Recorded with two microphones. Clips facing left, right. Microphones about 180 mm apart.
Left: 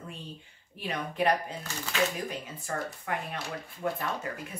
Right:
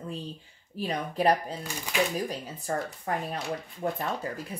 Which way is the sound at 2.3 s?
35° right (ahead or behind).